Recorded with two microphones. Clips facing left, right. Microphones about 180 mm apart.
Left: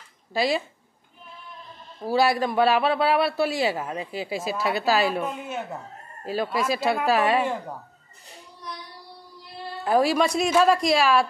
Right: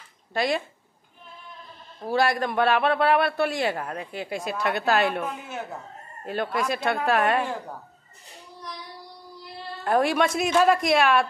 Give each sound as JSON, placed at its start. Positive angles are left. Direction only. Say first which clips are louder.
{"t": 0.3, "sound": "speech", "louder": "left 1 dB", "side_deg": 5}
{"t": 2.0, "sound": "a man's voice", "louder": "left 2 dB", "side_deg": 5}
{"t": 9.8, "sound": "a man's voice", "louder": "left 1 dB", "side_deg": 0}